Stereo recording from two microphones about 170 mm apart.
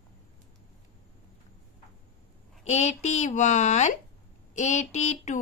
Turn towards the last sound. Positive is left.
turn(degrees=45)  # may be behind; listen again after turning